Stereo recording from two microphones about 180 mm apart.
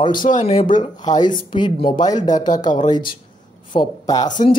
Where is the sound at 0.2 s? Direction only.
45° left (ahead or behind).